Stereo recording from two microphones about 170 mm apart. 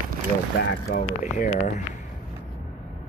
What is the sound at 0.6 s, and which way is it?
Speech, 70° left (ahead or behind).